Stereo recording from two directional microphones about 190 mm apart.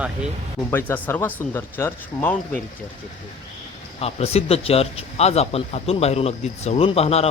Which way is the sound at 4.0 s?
30° left (ahead or behind).